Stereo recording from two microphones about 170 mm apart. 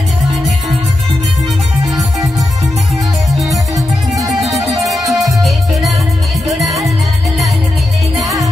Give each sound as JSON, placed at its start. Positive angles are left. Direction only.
{"t": 0.3, "sound": "music", "side_deg": 0}
{"t": 4.3, "sound": "music", "side_deg": 0}